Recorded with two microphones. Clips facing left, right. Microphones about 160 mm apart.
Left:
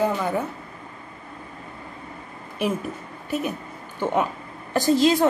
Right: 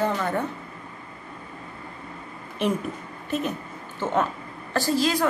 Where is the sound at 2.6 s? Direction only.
10° left (ahead or behind).